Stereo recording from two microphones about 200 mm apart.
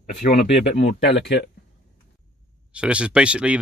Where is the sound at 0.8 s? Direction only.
60° left (ahead or behind).